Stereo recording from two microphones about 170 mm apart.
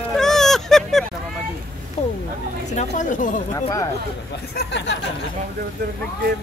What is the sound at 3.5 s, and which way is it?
Speech, 20° left (ahead or behind).